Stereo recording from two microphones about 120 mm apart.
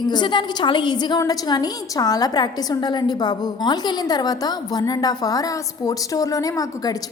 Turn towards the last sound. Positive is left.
turn(degrees=30)  # may be behind; listen again after turning